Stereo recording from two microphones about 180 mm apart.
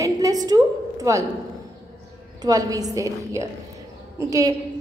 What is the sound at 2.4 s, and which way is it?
A woman's voice, 20° right (ahead or behind).